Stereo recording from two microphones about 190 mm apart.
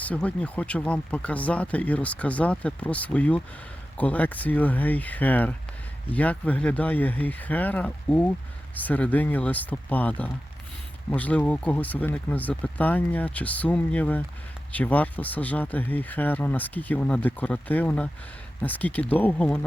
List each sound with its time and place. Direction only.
0.0 s speech: 5° left (ahead or behind)